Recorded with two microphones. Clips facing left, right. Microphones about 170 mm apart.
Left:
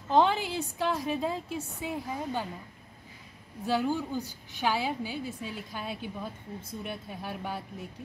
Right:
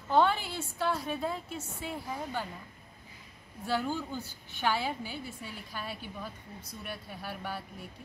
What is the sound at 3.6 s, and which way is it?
A woman's voice, 15° left (ahead or behind).